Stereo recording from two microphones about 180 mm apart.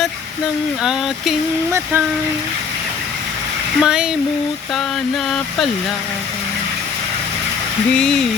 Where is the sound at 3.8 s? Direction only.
5° right (ahead or behind).